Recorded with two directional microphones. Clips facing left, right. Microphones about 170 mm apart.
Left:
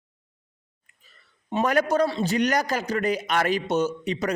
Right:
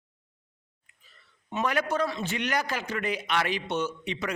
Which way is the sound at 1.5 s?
45° left (ahead or behind).